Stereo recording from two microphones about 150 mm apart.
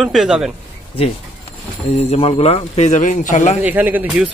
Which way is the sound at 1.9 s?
40° left (ahead or behind).